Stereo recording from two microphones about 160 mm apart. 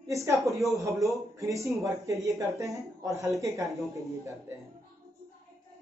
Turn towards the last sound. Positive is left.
turn(degrees=-20)  # may be behind; listen again after turning